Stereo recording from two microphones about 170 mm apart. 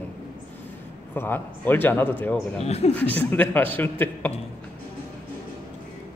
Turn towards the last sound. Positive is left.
turn(degrees=10)  # may be behind; listen again after turning